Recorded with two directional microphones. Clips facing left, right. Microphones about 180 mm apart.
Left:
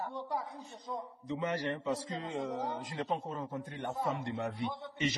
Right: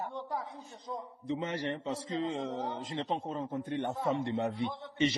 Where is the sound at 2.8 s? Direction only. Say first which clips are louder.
Right 1 dB; 25° right (ahead or behind).